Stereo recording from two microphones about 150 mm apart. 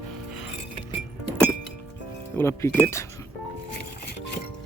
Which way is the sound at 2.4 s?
20° left (ahead or behind).